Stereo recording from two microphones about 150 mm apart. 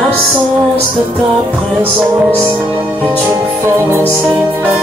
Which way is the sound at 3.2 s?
15° right (ahead or behind).